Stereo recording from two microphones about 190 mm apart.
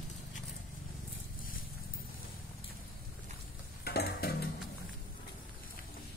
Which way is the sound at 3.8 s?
55° left (ahead or behind).